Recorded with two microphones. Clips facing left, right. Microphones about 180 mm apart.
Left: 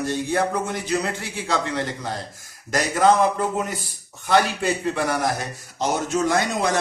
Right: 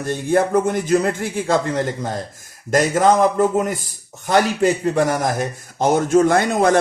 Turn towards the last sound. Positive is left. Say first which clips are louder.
# right 6 dB
turn(degrees=-55)  # may be behind; listen again after turning